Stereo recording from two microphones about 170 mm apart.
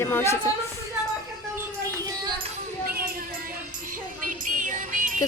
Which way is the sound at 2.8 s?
60° right (ahead or behind).